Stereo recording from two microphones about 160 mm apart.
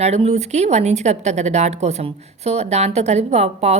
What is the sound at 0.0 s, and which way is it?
Speech, 40° right (ahead or behind).